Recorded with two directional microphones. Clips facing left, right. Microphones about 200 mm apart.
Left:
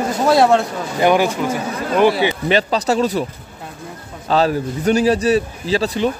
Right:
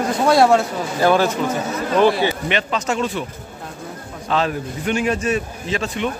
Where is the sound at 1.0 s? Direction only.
15° left (ahead or behind).